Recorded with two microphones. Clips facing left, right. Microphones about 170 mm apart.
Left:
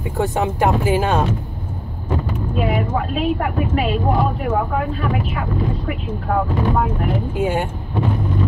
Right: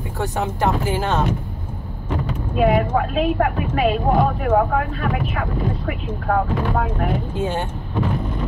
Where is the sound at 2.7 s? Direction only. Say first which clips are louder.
Right 2 dB; 55° right (ahead or behind).